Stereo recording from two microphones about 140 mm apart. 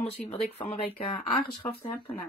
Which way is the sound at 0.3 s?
45° left (ahead or behind).